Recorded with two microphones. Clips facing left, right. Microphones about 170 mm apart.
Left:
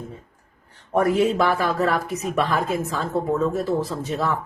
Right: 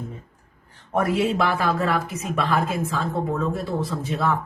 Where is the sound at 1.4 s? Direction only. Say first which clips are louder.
Left 2 dB; 40° left (ahead or behind).